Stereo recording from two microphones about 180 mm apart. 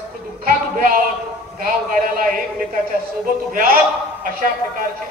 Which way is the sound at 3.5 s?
55° right (ahead or behind).